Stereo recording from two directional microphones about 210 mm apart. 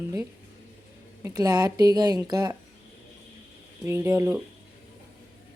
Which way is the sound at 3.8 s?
10° right (ahead or behind).